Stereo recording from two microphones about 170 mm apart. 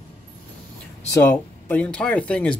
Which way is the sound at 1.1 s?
15° left (ahead or behind).